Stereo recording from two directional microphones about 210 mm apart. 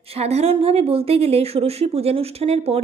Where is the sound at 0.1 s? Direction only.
30° right (ahead or behind).